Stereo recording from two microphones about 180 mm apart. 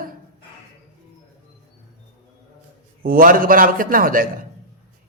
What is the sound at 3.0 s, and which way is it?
A man's voice, 50° right (ahead or behind).